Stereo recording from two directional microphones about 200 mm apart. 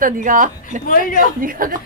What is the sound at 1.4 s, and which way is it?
Speech, 45° right (ahead or behind).